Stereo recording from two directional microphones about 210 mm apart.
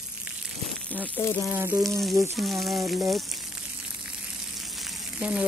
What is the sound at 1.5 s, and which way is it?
Speech, 10° right (ahead or behind).